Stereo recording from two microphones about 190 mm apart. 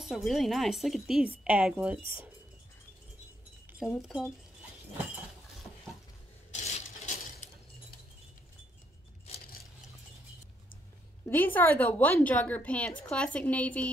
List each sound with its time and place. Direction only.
0.0 s a woman's voice: centre (ahead or behind)
3.9 s a woman's voice: 5° left (ahead or behind)
6.5 s a sound: 40° left (ahead or behind)
11.2 s a woman's voice: 10° left (ahead or behind)